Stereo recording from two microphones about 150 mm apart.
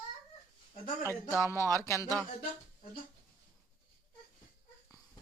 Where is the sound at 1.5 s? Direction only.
20° left (ahead or behind).